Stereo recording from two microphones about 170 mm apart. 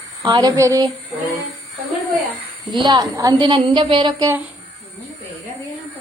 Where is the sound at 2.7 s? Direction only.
25° right (ahead or behind).